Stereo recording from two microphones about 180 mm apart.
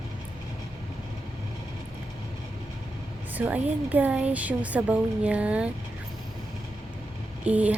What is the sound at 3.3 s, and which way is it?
A woman's voice, 10° right (ahead or behind).